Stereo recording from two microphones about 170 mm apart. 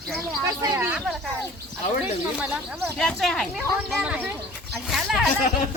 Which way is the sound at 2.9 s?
5° left (ahead or behind).